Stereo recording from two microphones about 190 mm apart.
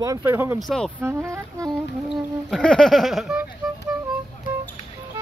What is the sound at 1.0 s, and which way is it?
Speech, 15° right (ahead or behind).